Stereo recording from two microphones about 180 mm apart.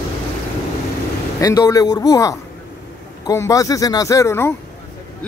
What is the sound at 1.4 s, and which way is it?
Speech, 20° left (ahead or behind).